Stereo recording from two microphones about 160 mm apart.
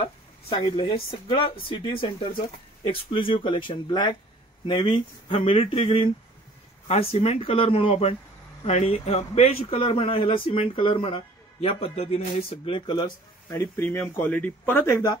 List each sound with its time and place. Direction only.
0.5 s a man's voice: 30° left (ahead or behind)
13.5 s speech: 15° left (ahead or behind)